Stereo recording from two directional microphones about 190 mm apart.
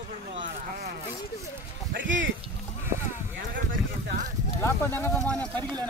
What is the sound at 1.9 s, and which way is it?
Speech, 75° right (ahead or behind).